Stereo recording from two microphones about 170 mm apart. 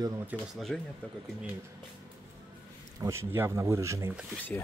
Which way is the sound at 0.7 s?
Centre (ahead or behind).